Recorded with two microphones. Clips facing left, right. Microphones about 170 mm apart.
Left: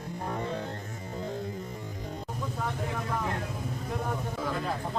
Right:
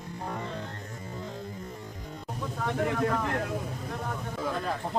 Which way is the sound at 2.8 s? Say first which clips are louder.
Right 6 dB; 70° right (ahead or behind).